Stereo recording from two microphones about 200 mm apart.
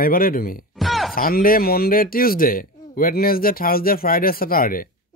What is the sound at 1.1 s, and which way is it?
Speech, 45° left (ahead or behind).